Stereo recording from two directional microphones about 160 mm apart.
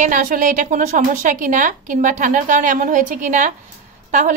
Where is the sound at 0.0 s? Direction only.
60° right (ahead or behind).